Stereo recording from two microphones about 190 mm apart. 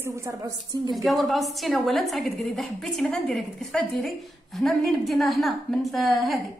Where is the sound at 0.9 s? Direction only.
Centre (ahead or behind).